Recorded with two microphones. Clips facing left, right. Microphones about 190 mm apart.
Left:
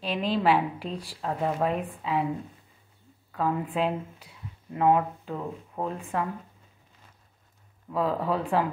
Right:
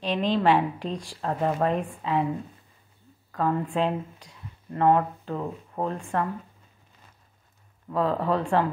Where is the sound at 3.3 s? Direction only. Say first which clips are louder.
Right 2 dB; 5° left (ahead or behind).